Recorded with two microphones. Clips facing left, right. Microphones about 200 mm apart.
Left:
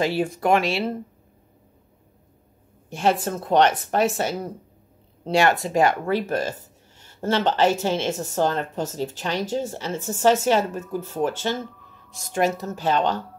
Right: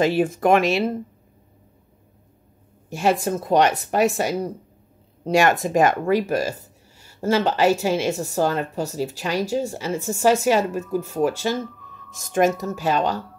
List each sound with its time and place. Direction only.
0.0 s speech: 20° right (ahead or behind)
3.0 s speech: 10° right (ahead or behind)
12.6 s speech: 10° right (ahead or behind)